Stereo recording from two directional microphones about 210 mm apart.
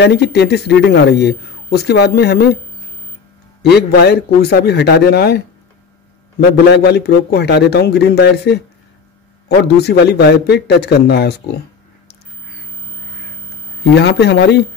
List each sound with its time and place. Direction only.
0.0 s a man's voice: 50° left (ahead or behind)
3.6 s a man's voice: 50° left (ahead or behind)
6.4 s a man's voice: 50° left (ahead or behind)
9.8 s a man's voice: 50° left (ahead or behind)
13.9 s a man's voice: 50° left (ahead or behind)